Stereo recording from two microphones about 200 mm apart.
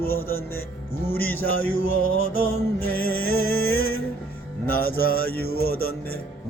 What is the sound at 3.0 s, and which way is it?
Music, 50° left (ahead or behind).